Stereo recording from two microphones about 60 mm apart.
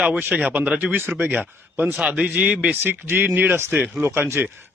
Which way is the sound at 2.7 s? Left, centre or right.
Right.